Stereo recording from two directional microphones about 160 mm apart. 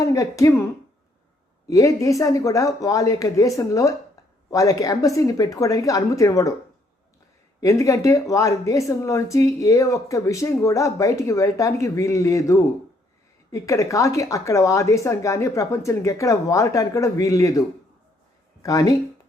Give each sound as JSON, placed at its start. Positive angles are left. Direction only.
{"t": 0.0, "sound": "speech", "side_deg": 20}
{"t": 7.6, "sound": "speech", "side_deg": 20}